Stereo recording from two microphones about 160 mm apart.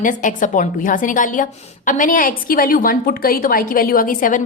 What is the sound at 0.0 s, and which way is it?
A woman's voice, 55° left (ahead or behind).